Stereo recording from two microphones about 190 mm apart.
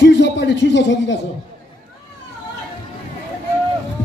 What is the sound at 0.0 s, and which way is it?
A man's voice, 65° left (ahead or behind).